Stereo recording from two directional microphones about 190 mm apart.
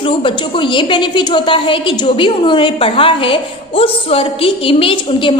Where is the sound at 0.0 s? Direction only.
25° left (ahead or behind).